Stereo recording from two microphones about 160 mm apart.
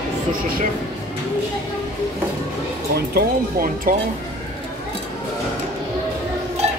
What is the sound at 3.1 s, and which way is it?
Speech, 65° right (ahead or behind).